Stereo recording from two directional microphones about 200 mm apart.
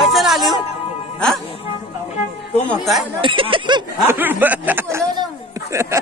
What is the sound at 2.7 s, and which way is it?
Speech, centre (ahead or behind).